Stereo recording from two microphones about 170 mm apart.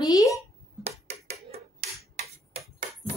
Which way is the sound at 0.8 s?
35° right (ahead or behind).